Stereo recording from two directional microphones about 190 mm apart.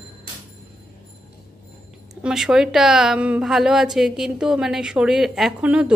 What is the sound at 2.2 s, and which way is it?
A woman's voice, centre (ahead or behind).